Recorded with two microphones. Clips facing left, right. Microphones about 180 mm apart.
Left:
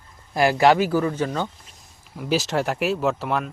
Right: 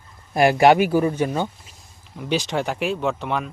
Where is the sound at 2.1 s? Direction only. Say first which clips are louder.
Left 1 dB; 5° left (ahead or behind).